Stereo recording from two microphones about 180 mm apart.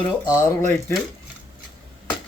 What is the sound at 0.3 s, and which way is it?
Speech, 20° left (ahead or behind).